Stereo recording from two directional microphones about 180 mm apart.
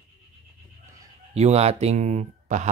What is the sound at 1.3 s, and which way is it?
Speech, 35° right (ahead or behind).